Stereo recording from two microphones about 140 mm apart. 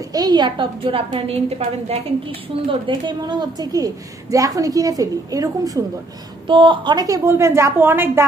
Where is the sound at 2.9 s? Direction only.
35° right (ahead or behind).